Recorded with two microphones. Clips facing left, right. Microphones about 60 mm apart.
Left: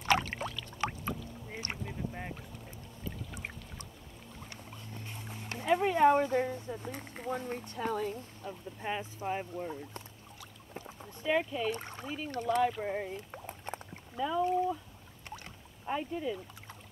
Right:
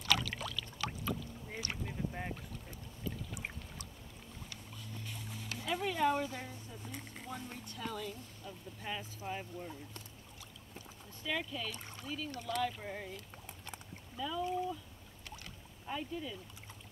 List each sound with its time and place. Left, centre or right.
0.0 s pour: left
1.9 s boat: centre
4.5 s vehicle: left
5.2 s speech: left
10.7 s boat: left
11.7 s speech: left
15.2 s boat: left